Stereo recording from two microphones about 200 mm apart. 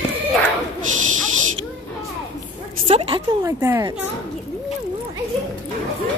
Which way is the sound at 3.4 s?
15° right (ahead or behind).